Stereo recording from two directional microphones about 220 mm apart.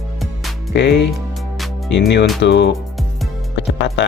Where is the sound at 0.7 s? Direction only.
50° left (ahead or behind).